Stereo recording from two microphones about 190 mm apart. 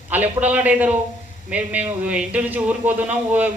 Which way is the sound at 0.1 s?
10° right (ahead or behind).